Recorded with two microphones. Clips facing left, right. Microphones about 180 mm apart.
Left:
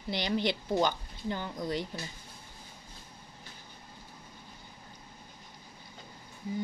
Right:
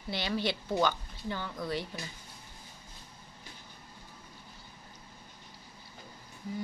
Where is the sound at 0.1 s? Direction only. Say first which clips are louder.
Left 2 dB; 15° left (ahead or behind).